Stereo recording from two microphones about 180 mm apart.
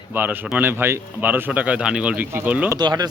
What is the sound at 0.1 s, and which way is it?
A man's voice, 10° right (ahead or behind).